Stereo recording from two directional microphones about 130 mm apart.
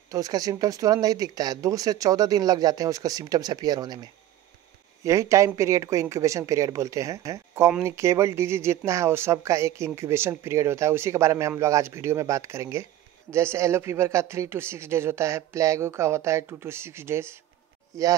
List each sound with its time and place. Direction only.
0.1 s speech: 30° right (ahead or behind)